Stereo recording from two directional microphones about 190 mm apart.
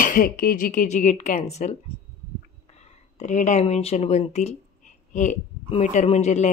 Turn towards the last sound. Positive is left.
turn(degrees=35)  # may be behind; listen again after turning